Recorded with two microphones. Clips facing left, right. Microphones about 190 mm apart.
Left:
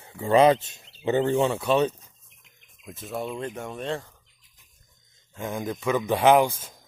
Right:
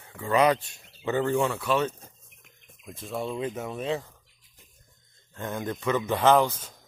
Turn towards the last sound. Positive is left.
turn(degrees=10)  # may be behind; listen again after turning